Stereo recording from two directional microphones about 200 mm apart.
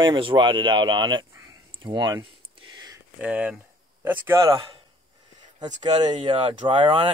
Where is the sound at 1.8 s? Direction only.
20° right (ahead or behind).